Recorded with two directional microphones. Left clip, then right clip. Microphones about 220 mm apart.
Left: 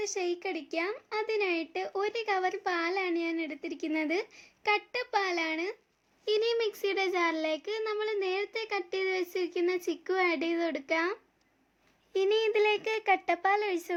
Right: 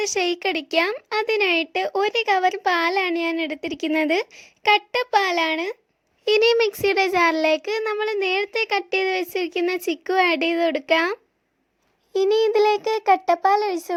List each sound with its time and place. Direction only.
0.0 s a woman's voice: 40° right (ahead or behind)
12.1 s a child's voice: 25° right (ahead or behind)